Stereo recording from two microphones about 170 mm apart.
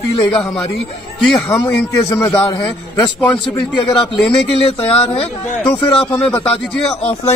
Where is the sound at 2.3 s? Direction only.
25° left (ahead or behind).